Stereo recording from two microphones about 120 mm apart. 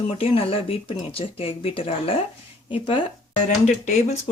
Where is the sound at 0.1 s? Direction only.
50° left (ahead or behind).